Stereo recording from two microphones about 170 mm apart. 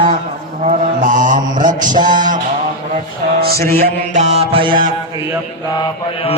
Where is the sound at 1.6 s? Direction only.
25° right (ahead or behind).